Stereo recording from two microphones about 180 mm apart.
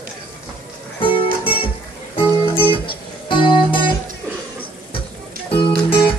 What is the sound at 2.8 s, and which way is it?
Music, 25° left (ahead or behind).